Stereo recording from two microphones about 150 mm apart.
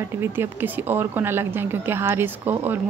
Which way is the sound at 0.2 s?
15° right (ahead or behind).